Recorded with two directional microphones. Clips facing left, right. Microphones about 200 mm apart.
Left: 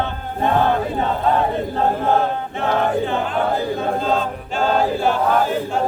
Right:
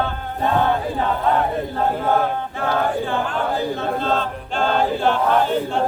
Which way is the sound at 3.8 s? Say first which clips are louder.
Left 2 dB; 10° left (ahead or behind).